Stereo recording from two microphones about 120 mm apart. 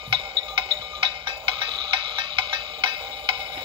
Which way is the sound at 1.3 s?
45° right (ahead or behind).